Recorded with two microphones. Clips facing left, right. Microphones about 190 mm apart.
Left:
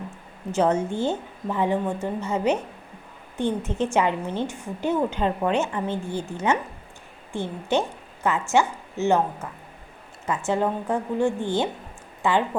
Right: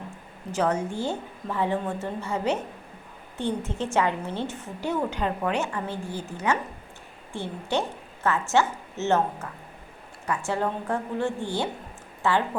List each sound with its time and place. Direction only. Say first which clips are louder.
0.5 s a woman's voice: left 4 dB; 25° left (ahead or behind)